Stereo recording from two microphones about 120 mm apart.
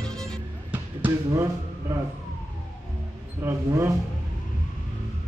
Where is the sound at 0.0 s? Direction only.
5° left (ahead or behind).